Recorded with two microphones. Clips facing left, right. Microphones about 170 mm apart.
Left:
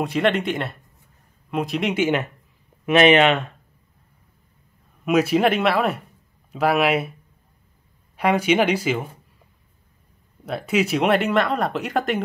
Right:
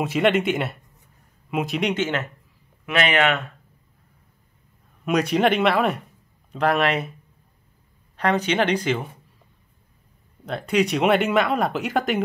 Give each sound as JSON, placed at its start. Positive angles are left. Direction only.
{"t": 0.0, "sound": "speech", "side_deg": 0}
{"t": 2.8, "sound": "speech", "side_deg": 25}
{"t": 5.0, "sound": "speech", "side_deg": 5}
{"t": 8.2, "sound": "speech", "side_deg": 10}
{"t": 10.4, "sound": "speech", "side_deg": 5}